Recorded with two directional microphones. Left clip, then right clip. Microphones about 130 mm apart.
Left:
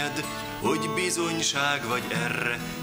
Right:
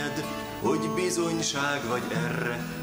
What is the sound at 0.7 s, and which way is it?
Music, 25° left (ahead or behind).